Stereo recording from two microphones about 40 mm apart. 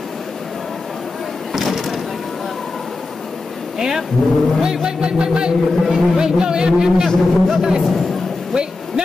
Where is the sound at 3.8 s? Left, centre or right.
Centre.